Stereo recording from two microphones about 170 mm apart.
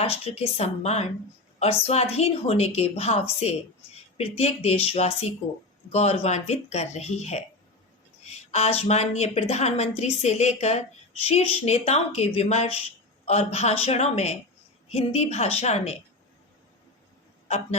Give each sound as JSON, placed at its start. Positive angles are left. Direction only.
{"t": 0.0, "sound": "a woman's voice", "side_deg": 35}